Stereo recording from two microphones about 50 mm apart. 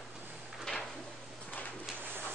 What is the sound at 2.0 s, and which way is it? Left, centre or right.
Pigeon, right.